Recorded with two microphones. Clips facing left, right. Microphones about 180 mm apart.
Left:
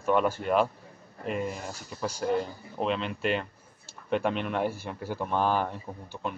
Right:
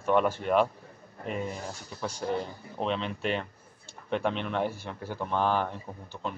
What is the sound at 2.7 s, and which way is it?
Speech, 5° left (ahead or behind).